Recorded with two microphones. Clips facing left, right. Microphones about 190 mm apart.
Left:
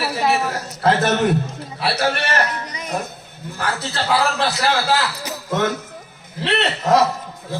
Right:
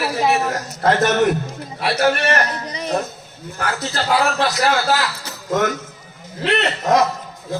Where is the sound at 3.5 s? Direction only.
30° left (ahead or behind).